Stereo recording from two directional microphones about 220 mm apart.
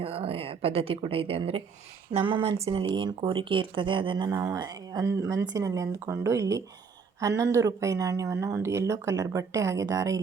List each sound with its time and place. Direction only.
0.0 s speech: 25° right (ahead or behind)